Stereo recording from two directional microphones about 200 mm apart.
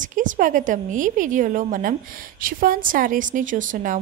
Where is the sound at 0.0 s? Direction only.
40° right (ahead or behind).